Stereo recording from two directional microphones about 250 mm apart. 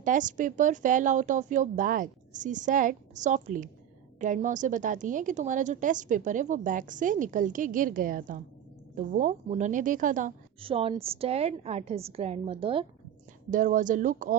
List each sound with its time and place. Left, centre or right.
0.0 s a woman's voice: right